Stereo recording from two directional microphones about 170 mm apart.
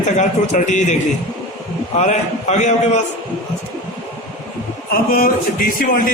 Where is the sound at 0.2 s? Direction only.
45° left (ahead or behind).